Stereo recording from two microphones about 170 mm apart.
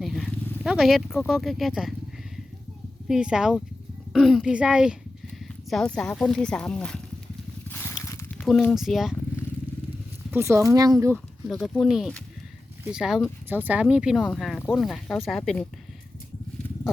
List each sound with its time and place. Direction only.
0.0 s wild animals: centre (ahead or behind)
1.3 s speech: centre (ahead or behind)
3.1 s speech: 5° right (ahead or behind)
7.7 s a sound: 10° left (ahead or behind)
8.4 s speech: 5° left (ahead or behind)
10.3 s speech: 15° right (ahead or behind)
11.7 s speech: centre (ahead or behind)